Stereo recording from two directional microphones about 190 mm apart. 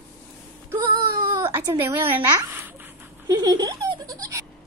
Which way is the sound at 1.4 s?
15° right (ahead or behind).